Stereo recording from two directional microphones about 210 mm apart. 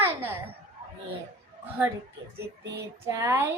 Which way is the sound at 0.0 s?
10° right (ahead or behind).